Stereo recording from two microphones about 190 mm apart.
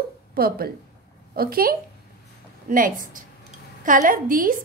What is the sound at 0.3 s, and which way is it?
A woman's voice, 50° right (ahead or behind).